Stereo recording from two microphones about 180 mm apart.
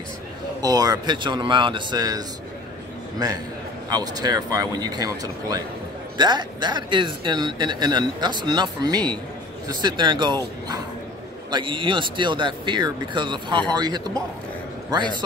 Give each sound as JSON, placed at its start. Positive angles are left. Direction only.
{"t": 0.6, "sound": "speech", "side_deg": -20}
{"t": 3.9, "sound": "speech", "side_deg": -20}